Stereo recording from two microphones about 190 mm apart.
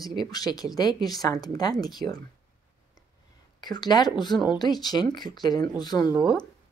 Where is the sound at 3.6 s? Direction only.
20° left (ahead or behind).